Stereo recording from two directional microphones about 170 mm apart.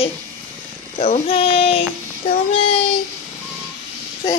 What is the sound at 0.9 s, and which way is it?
Speech, 45° left (ahead or behind).